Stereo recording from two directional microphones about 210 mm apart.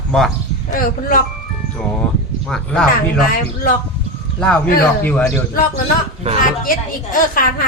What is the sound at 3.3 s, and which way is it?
Speech, 45° left (ahead or behind).